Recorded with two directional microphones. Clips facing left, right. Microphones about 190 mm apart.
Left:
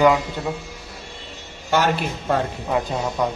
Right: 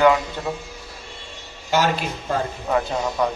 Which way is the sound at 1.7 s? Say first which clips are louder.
Left 1 dB; 60° left (ahead or behind).